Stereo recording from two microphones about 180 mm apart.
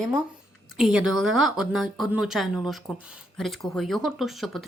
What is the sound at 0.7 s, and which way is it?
A woman's voice, 5° right (ahead or behind).